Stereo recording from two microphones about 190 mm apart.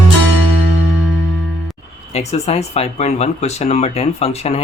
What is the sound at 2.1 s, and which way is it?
Speech, 35° left (ahead or behind).